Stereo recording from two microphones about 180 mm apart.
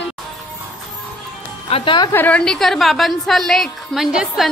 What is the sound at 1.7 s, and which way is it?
Speech, 25° left (ahead or behind).